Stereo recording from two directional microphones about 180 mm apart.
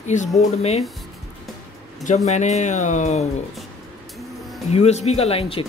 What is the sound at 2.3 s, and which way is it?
Speech, 40° left (ahead or behind).